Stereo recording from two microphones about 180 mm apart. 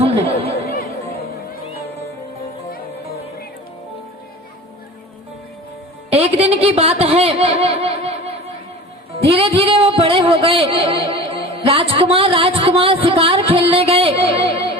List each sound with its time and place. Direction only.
0.0 s chatter: 30° right (ahead or behind)
6.1 s a woman's voice: 35° right (ahead or behind)
9.3 s a sound: 30° right (ahead or behind)